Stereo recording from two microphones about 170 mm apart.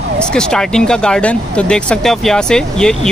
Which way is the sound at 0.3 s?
5° left (ahead or behind).